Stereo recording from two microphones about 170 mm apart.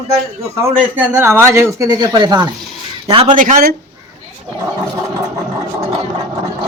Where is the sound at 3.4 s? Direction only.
55° right (ahead or behind).